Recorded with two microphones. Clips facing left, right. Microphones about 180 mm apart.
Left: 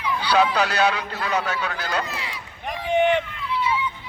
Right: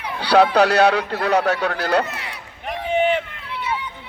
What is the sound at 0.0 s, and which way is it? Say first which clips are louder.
Speech: right 4 dB; 65° right (ahead or behind).